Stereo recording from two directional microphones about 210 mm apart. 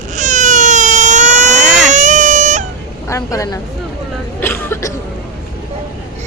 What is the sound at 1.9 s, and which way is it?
Baby cry, 35° right (ahead or behind).